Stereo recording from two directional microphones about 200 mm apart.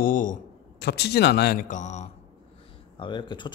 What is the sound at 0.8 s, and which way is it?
A man's voice, 55° left (ahead or behind).